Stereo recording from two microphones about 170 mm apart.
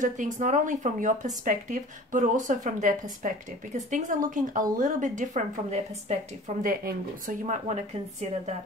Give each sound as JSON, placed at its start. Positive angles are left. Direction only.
{"t": 0.0, "sound": "speech", "side_deg": -50}
{"t": 6.6, "sound": "speech", "side_deg": -55}